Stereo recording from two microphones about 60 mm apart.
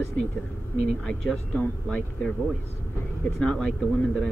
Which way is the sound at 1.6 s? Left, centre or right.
Left.